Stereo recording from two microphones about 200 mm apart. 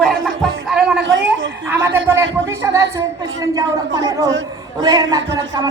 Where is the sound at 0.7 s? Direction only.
5° right (ahead or behind).